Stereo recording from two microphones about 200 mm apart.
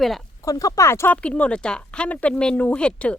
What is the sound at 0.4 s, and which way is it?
Speech, 15° left (ahead or behind).